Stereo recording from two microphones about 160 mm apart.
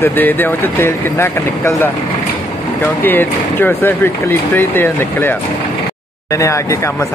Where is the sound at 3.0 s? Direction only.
10° left (ahead or behind).